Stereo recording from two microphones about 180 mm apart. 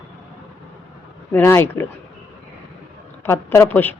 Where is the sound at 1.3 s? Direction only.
10° left (ahead or behind).